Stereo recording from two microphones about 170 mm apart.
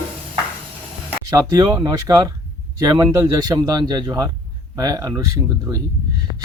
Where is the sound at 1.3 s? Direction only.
20° right (ahead or behind).